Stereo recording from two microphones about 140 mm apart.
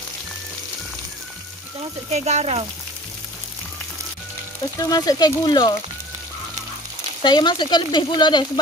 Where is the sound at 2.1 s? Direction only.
55° right (ahead or behind).